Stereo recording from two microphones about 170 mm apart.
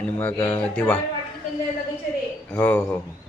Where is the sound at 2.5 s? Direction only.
10° left (ahead or behind).